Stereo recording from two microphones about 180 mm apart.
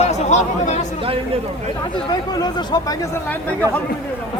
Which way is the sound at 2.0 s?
25° left (ahead or behind).